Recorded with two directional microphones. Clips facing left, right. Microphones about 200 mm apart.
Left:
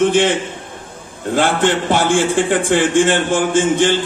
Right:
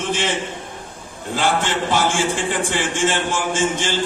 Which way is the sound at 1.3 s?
55° left (ahead or behind).